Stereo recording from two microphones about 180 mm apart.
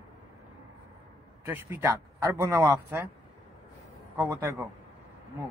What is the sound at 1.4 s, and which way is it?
Speech, 10° right (ahead or behind).